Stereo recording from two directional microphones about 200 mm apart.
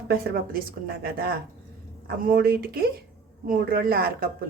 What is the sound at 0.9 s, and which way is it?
Speech, 50° right (ahead or behind).